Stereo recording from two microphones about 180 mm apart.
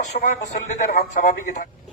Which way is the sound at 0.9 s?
50° left (ahead or behind).